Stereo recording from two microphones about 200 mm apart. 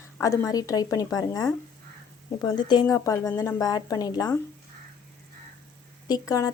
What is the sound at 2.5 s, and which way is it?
A woman's voice, 20° left (ahead or behind).